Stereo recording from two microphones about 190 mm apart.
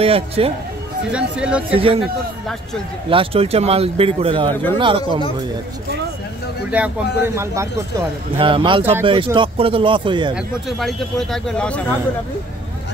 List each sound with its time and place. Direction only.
0.0 s speech: 30° right (ahead or behind)
1.1 s speech: 5° right (ahead or behind)
1.7 s speech: 30° right (ahead or behind)
3.1 s speech: 30° right (ahead or behind)
6.7 s a man's voice: 5° right (ahead or behind)
8.4 s speech: 25° right (ahead or behind)
10.3 s speech: centre (ahead or behind)